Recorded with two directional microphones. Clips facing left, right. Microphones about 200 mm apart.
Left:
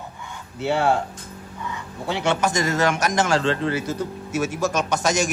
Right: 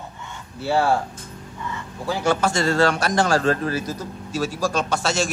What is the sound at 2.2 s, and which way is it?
A man's voice, 20° left (ahead or behind).